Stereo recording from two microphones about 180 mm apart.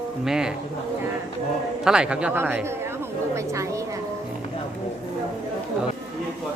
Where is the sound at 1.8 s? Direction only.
5° right (ahead or behind).